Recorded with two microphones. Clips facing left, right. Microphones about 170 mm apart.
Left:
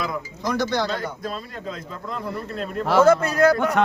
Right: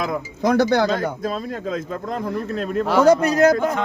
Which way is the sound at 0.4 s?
50° right (ahead or behind).